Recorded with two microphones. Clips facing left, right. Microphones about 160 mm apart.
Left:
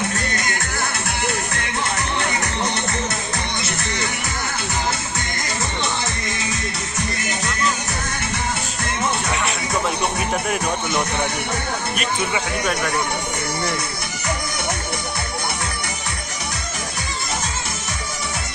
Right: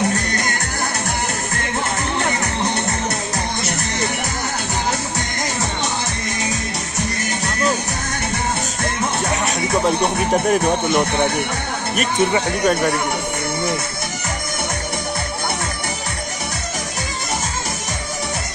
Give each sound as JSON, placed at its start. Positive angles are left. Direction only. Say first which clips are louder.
{"t": 9.3, "sound": "music", "louder": "right 3 dB", "side_deg": -40}
{"t": 10.3, "sound": "speech", "louder": "right 7 dB", "side_deg": -40}
{"t": 11.9, "sound": "speech", "louder": "right 9 dB", "side_deg": -35}